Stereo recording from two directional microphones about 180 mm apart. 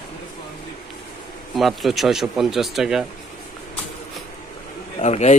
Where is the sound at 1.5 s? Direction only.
Centre (ahead or behind).